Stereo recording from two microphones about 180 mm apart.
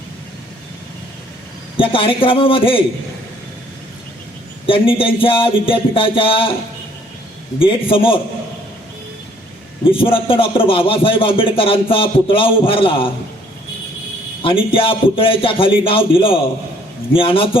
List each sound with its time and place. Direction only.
1.7 s a man's voice: 30° left (ahead or behind)
4.6 s a man's voice: 30° left (ahead or behind)
7.6 s a man's voice: 30° left (ahead or behind)
9.8 s a man's voice: 30° left (ahead or behind)
14.7 s speech: 30° left (ahead or behind)